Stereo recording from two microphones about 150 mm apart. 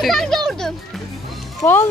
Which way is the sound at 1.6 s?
15° left (ahead or behind).